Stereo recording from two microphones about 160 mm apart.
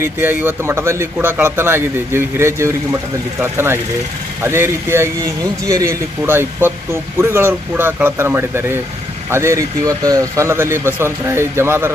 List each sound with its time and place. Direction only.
0.0 s speech: 10° right (ahead or behind)